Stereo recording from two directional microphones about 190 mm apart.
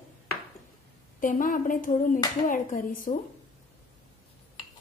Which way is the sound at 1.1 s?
45° left (ahead or behind).